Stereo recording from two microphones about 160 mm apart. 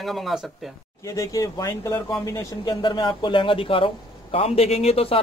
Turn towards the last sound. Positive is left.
turn(degrees=35)  # may be behind; listen again after turning